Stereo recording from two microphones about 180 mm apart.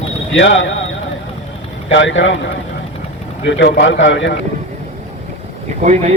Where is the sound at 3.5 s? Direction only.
90° left.